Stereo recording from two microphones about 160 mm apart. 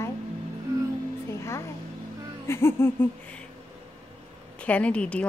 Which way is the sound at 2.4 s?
15° left (ahead or behind).